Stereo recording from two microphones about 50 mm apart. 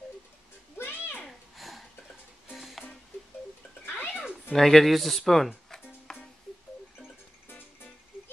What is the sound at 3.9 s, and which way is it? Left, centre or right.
Cat, left.